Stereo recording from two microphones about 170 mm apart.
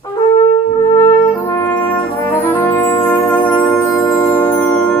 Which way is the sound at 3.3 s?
10° left (ahead or behind).